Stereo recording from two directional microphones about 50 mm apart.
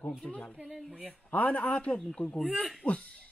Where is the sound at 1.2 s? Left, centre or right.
Left.